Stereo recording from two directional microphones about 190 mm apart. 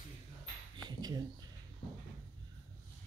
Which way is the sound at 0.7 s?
20° right (ahead or behind).